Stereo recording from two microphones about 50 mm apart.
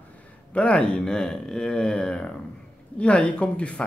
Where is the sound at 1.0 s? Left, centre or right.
Centre.